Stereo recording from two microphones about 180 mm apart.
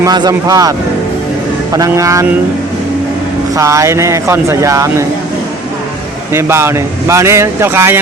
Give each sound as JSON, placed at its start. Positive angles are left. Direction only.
{"t": 0.0, "sound": "speech", "side_deg": -20}
{"t": 1.7, "sound": "speech", "side_deg": -20}
{"t": 3.5, "sound": "speech", "side_deg": -15}
{"t": 6.3, "sound": "speech", "side_deg": -15}